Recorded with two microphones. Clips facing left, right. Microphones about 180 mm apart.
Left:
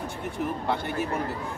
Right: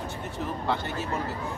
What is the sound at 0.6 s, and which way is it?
Speech, 15° left (ahead or behind).